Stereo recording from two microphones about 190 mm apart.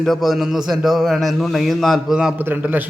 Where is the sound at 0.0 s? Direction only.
Centre (ahead or behind).